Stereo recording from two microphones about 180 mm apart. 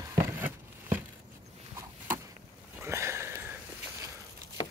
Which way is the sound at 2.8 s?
15° right (ahead or behind).